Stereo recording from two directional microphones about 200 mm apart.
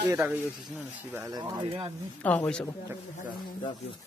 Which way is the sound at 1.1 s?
15° right (ahead or behind).